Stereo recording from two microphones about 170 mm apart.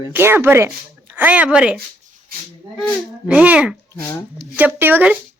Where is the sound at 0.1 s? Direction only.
15° right (ahead or behind).